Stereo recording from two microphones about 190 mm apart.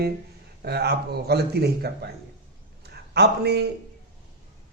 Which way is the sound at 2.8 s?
60° right (ahead or behind).